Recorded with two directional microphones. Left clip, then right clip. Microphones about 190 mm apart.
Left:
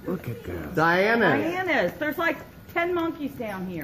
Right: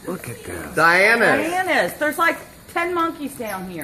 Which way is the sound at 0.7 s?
30° left (ahead or behind).